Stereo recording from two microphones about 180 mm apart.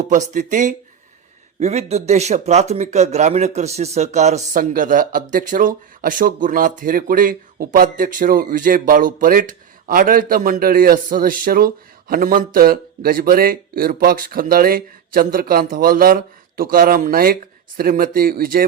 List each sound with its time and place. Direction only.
0.0 s a man's voice: 45° right (ahead or behind)